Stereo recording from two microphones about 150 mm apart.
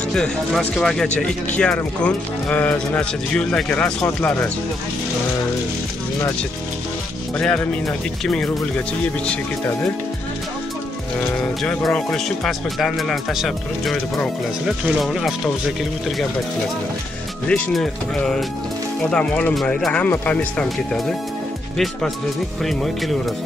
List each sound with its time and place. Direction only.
0.1 s speech: centre (ahead or behind)
7.3 s speech: 5° left (ahead or behind)
9.0 s speech: 5° left (ahead or behind)
11.3 s speech: 5° left (ahead or behind)
17.5 s speech: 5° left (ahead or behind)
22.6 s speech: centre (ahead or behind)